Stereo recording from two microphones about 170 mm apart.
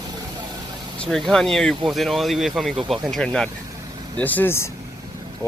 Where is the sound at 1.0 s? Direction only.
Centre (ahead or behind).